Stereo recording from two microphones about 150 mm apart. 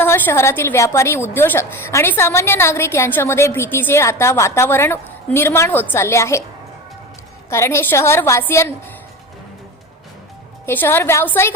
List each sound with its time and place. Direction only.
0.0 s a woman's voice: 15° left (ahead or behind)
7.5 s a woman's voice: 15° left (ahead or behind)
10.7 s a woman's voice: 15° left (ahead or behind)